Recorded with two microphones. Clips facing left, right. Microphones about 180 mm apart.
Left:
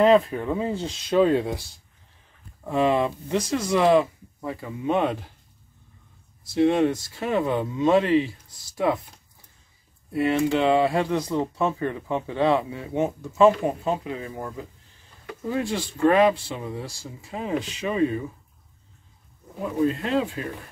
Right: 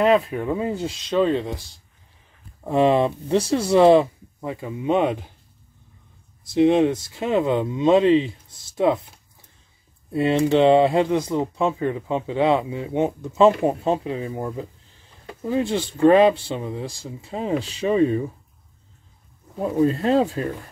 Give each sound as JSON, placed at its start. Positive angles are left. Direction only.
{"t": 0.0, "sound": "speech", "side_deg": -5}
{"t": 1.0, "sound": "speech", "side_deg": 5}
{"t": 2.6, "sound": "speech", "side_deg": -30}
{"t": 4.4, "sound": "speech", "side_deg": -20}
{"t": 6.5, "sound": "speech", "side_deg": -20}
{"t": 10.1, "sound": "speech", "side_deg": -25}
{"t": 19.8, "sound": "speech", "side_deg": -40}